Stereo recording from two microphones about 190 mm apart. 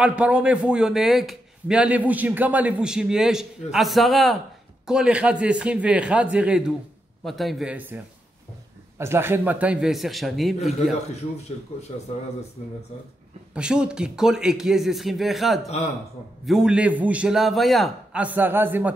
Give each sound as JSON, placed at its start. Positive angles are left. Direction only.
{"t": 0.0, "sound": "a man's voice", "side_deg": -5}
{"t": 11.7, "sound": "a man's voice", "side_deg": 30}
{"t": 13.6, "sound": "a man's voice", "side_deg": -5}